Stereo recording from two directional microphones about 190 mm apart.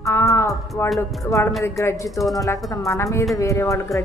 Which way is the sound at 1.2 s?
15° left (ahead or behind).